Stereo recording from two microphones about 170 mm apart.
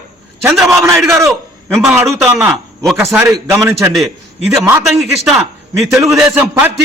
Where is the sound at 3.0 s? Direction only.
15° right (ahead or behind).